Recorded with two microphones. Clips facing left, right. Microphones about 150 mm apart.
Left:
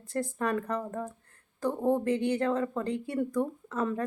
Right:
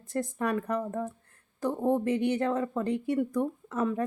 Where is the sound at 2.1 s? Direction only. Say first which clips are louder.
Even; 20° right (ahead or behind).